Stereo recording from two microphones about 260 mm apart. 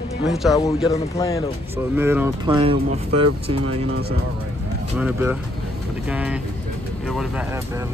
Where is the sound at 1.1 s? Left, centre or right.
Centre.